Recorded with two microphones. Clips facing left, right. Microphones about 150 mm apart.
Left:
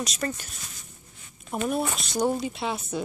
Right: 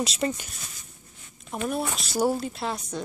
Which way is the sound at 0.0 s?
30° right (ahead or behind).